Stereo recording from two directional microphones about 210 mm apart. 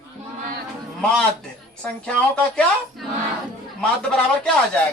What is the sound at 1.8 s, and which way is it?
A woman's voice, 5° left (ahead or behind).